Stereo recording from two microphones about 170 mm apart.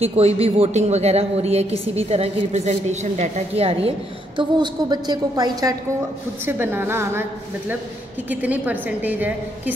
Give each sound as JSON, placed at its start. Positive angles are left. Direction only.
{"t": 0.0, "sound": "a woman's voice", "side_deg": -35}
{"t": 4.4, "sound": "a woman's voice", "side_deg": -25}